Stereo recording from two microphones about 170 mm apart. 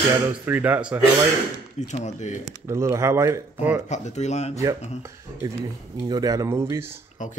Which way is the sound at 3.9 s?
40° left (ahead or behind).